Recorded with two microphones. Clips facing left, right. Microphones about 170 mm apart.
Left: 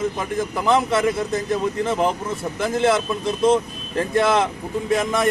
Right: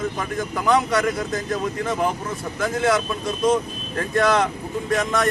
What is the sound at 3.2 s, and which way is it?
Speech, 25° left (ahead or behind).